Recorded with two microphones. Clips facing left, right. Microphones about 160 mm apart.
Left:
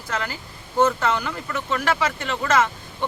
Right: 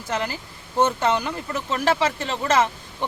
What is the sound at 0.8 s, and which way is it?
Speech, 25° right (ahead or behind).